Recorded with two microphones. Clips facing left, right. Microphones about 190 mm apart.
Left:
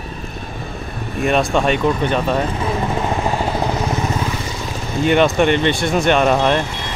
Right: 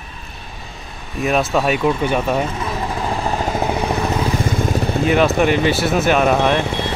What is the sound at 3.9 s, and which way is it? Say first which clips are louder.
Vehicle: right 2 dB; 55° right (ahead or behind).